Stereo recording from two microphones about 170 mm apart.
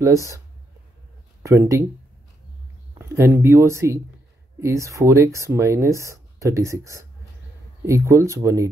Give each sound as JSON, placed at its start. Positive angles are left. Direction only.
{"t": 0.0, "sound": "speech", "side_deg": -20}
{"t": 1.4, "sound": "speech", "side_deg": -15}
{"t": 3.0, "sound": "speech", "side_deg": -15}